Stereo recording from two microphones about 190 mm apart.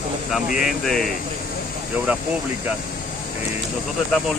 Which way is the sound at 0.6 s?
Centre (ahead or behind).